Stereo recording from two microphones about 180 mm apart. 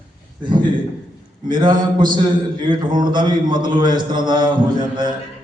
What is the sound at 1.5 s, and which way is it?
A man's voice, 25° right (ahead or behind).